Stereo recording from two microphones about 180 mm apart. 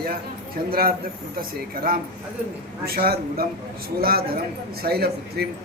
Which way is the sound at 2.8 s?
55° right (ahead or behind).